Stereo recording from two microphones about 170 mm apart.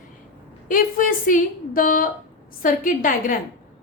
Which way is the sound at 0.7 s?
55° left (ahead or behind).